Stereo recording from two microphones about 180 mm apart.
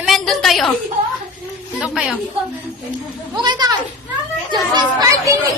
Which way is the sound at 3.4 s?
25° right (ahead or behind).